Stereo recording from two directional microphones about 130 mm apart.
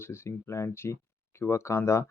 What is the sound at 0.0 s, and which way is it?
Speech, 20° left (ahead or behind).